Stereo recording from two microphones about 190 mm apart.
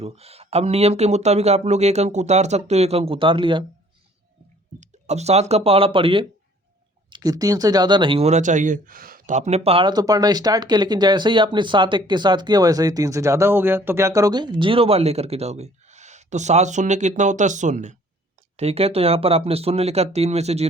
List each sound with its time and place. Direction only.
0.0 s speech: 30° right (ahead or behind)
4.8 s speech: 35° right (ahead or behind)